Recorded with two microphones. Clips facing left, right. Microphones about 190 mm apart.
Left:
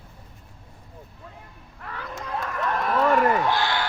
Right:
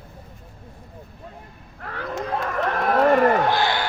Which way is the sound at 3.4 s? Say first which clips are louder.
Right 3 dB; 45° right (ahead or behind).